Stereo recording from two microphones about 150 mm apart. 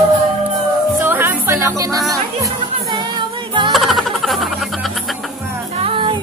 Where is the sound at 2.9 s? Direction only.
30° right (ahead or behind).